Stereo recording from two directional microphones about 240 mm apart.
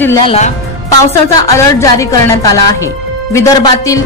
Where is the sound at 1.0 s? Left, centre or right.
Centre.